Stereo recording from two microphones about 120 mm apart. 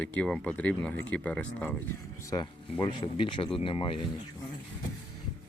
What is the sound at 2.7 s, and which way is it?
Speech, 45° left (ahead or behind).